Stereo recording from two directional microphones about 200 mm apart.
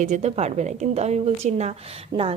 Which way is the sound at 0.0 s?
35° right (ahead or behind).